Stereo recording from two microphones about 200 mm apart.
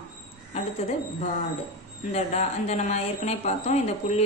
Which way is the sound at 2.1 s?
35° left (ahead or behind).